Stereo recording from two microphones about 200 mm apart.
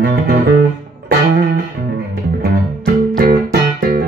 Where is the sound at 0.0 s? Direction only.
45° right (ahead or behind).